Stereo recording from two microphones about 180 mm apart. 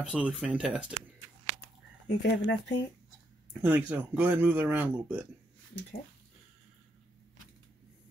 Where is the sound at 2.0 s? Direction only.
70° left (ahead or behind).